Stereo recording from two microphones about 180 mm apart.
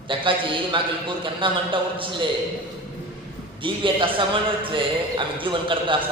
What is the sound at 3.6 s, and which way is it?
A man's voice, 30° right (ahead or behind).